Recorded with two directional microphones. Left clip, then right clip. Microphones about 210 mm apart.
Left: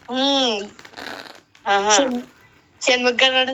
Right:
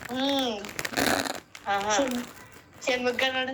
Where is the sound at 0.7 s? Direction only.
35° right (ahead or behind).